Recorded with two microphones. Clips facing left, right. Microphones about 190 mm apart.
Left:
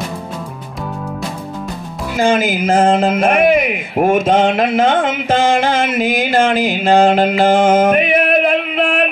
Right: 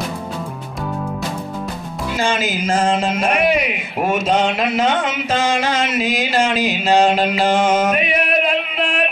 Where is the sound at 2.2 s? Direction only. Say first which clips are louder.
Left 7 dB; 50° left (ahead or behind).